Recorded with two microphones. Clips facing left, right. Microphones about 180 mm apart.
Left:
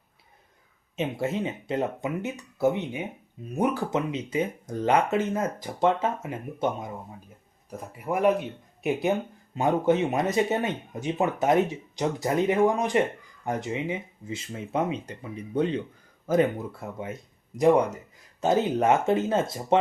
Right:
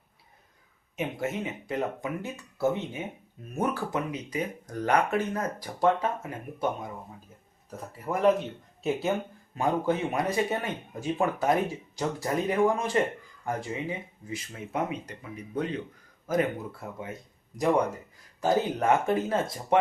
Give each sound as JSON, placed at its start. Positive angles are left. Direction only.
{"t": 0.9, "sound": "speech", "side_deg": 30}
{"t": 7.9, "sound": "speech", "side_deg": 10}
{"t": 18.3, "sound": "speech", "side_deg": 20}